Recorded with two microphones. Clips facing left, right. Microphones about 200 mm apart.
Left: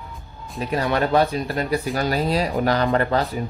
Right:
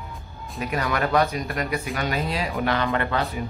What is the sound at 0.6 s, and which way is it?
Speech, 30° left (ahead or behind).